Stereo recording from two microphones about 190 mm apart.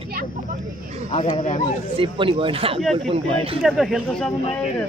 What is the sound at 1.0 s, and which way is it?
Speech, 35° left (ahead or behind).